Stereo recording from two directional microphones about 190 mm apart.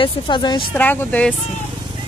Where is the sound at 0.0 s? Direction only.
25° left (ahead or behind).